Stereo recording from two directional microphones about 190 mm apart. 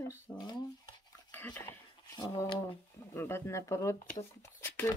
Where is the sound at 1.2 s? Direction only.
10° left (ahead or behind).